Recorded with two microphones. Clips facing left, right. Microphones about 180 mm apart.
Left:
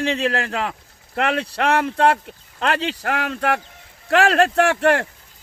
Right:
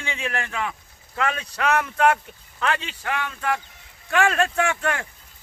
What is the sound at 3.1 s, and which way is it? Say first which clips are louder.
Speech: left 3 dB; 80° left.